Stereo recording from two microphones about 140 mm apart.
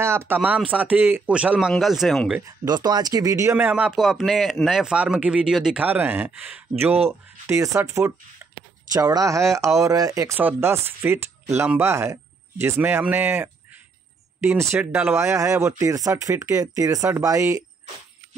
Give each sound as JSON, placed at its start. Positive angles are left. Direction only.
{"t": 0.0, "sound": "speech", "side_deg": -15}
{"t": 2.4, "sound": "speech", "side_deg": -30}